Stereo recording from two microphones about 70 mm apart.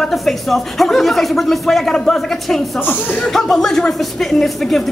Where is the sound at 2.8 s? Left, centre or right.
Left.